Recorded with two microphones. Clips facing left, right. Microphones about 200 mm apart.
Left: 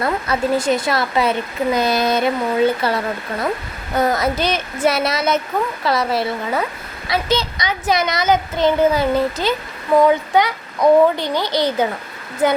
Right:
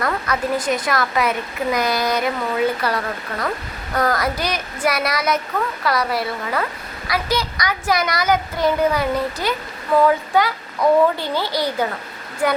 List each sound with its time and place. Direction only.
0.0 s a child's voice: 25° left (ahead or behind)